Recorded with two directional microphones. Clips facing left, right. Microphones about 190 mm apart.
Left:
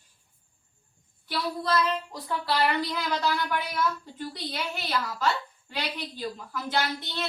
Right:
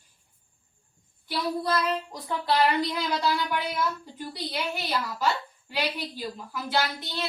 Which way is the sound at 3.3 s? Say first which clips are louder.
Right 1 dB; 15° right (ahead or behind).